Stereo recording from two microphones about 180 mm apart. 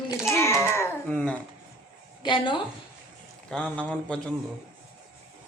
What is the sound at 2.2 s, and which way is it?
Speech, 25° left (ahead or behind).